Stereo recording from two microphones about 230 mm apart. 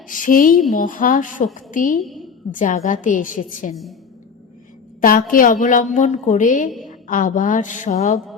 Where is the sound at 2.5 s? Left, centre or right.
Left.